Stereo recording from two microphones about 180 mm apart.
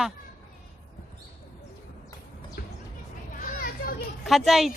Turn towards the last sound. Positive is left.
turn(degrees=0)  # may be behind; listen again after turning